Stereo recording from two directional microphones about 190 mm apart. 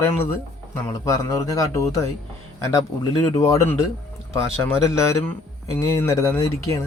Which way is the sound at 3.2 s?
15° left (ahead or behind).